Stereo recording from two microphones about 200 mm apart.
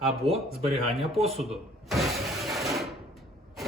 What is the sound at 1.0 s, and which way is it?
Speech, 30° right (ahead or behind).